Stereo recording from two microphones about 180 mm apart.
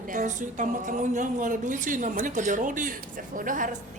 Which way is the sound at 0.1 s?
45° right (ahead or behind).